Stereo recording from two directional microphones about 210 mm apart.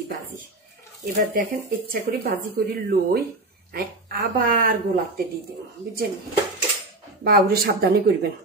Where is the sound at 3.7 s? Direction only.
45° right (ahead or behind).